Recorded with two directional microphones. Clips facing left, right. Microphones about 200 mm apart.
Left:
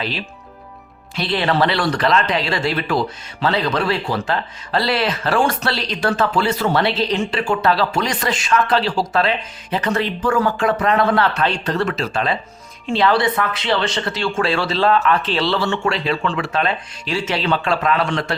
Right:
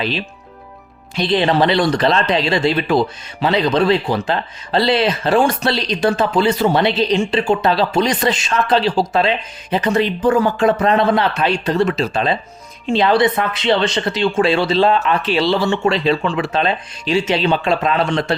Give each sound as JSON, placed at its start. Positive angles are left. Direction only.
{"t": 1.1, "sound": "speech", "side_deg": -20}